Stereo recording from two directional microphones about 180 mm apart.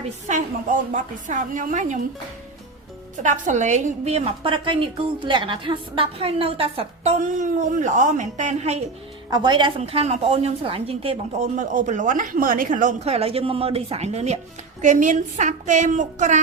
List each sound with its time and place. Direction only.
0.3 s a woman's voice: 45° right (ahead or behind)
3.2 s a woman's voice: 40° right (ahead or behind)
9.3 s a woman's voice: 25° right (ahead or behind)
11.5 s a woman's voice: 45° right (ahead or behind)